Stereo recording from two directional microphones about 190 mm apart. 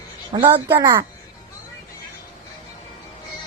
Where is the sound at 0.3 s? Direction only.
25° right (ahead or behind).